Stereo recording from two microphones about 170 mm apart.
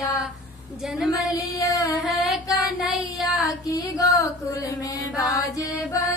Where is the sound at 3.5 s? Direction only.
20° left (ahead or behind).